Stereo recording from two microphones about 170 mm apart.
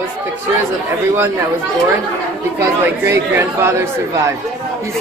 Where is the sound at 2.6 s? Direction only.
15° right (ahead or behind).